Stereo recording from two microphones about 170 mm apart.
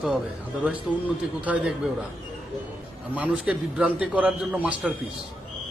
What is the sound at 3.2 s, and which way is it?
A man's voice, 5° right (ahead or behind).